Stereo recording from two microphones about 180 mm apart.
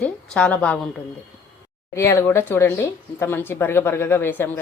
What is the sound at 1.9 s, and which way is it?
Speech, 15° left (ahead or behind).